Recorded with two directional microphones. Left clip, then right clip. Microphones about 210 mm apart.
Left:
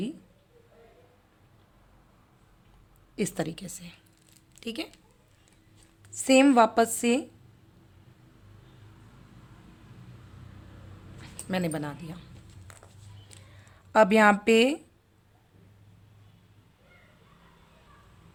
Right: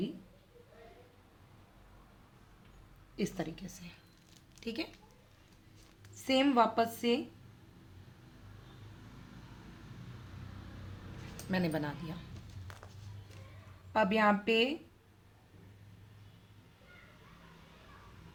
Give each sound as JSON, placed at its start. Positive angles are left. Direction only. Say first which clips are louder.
{"t": 3.2, "sound": "speech", "louder": "left 7 dB", "side_deg": 55}
{"t": 6.1, "sound": "a woman's voice", "louder": "left 9 dB", "side_deg": 55}
{"t": 11.3, "sound": "speech", "louder": "left 4 dB", "side_deg": 35}
{"t": 13.9, "sound": "speech", "louder": "left 9 dB", "side_deg": 50}